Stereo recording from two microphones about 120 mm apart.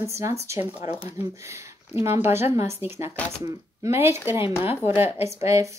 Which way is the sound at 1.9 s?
20° right (ahead or behind).